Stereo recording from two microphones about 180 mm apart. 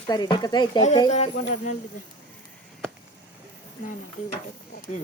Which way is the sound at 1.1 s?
40° left (ahead or behind).